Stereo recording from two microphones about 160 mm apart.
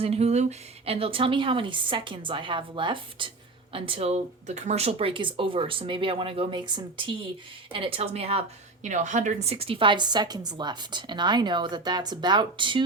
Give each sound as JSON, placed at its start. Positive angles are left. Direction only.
{"t": 0.0, "sound": "a woman's voice", "side_deg": -40}